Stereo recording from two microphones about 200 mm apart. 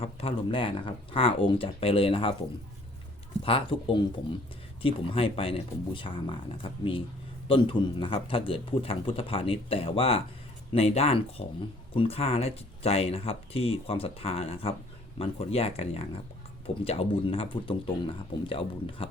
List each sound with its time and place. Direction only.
0.0 s speech: 30° left (ahead or behind)
3.4 s speech: 25° left (ahead or behind)